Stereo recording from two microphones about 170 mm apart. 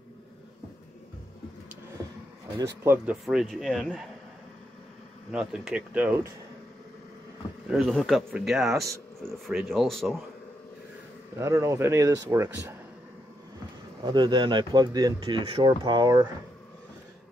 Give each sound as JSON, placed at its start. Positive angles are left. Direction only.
{"t": 2.5, "sound": "speech", "side_deg": -15}
{"t": 3.3, "sound": "speech", "side_deg": 0}
{"t": 5.3, "sound": "speech", "side_deg": -5}
{"t": 7.7, "sound": "speech", "side_deg": 0}
{"t": 11.3, "sound": "speech", "side_deg": -15}
{"t": 14.0, "sound": "speech", "side_deg": -25}